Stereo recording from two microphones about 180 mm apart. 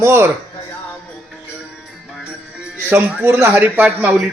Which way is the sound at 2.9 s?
10° right (ahead or behind).